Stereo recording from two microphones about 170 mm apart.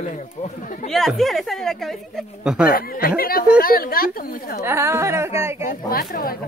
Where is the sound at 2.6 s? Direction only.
60° left (ahead or behind).